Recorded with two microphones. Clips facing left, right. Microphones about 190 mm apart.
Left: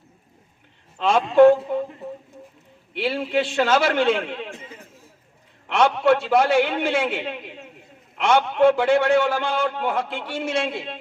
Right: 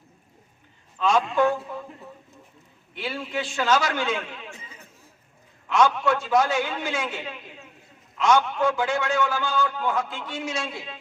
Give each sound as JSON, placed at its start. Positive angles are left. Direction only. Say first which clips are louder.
{"t": 1.0, "sound": "a man's voice", "louder": "left 8 dB", "side_deg": 30}
{"t": 3.3, "sound": "a man's voice", "louder": "left 9 dB", "side_deg": 60}
{"t": 3.6, "sound": "a man's voice", "louder": "left 3 dB", "side_deg": 30}
{"t": 5.9, "sound": "a man's voice", "louder": "left 5 dB", "side_deg": 30}
{"t": 8.2, "sound": "a sound", "louder": "left 1 dB", "side_deg": 30}
{"t": 8.5, "sound": "a man's voice", "louder": "left 8 dB", "side_deg": 60}
{"t": 8.9, "sound": "a man's voice", "louder": "left 7 dB", "side_deg": 30}
{"t": 10.5, "sound": "a man's voice", "louder": "left 10 dB", "side_deg": 60}